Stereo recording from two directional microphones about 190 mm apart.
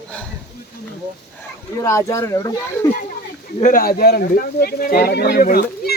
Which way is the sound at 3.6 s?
50° left (ahead or behind).